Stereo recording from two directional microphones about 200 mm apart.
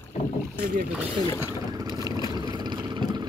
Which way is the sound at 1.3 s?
15° right (ahead or behind).